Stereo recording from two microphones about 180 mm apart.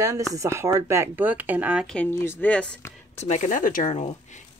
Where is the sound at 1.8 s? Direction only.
5° left (ahead or behind).